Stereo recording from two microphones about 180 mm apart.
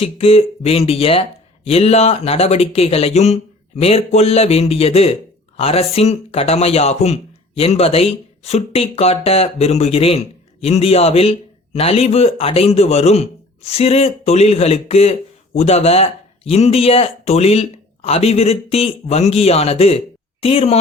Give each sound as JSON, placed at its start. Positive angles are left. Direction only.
{"t": 0.0, "sound": "speech", "side_deg": 35}